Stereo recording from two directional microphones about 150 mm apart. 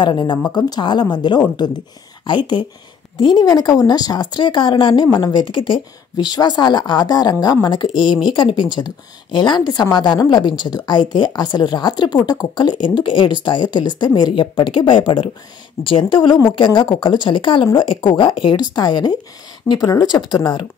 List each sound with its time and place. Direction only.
0.0 s a woman's voice: 30° left (ahead or behind)